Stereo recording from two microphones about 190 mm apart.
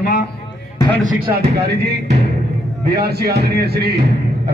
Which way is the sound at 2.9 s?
55° right (ahead or behind).